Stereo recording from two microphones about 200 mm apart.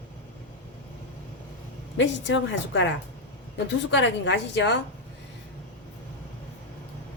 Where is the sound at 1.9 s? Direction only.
65° left (ahead or behind).